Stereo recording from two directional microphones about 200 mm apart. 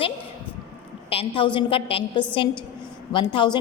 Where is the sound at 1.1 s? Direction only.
30° left (ahead or behind).